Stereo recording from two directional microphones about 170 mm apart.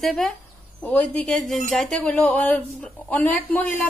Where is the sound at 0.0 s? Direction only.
Centre (ahead or behind).